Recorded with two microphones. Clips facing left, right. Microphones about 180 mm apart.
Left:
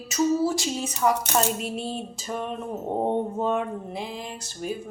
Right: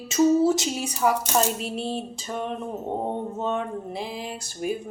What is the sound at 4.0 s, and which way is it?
Music, 5° right (ahead or behind).